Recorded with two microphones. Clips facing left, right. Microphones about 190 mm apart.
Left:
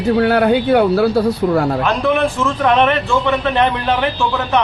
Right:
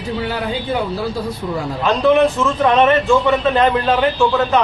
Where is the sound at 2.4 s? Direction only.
5° right (ahead or behind).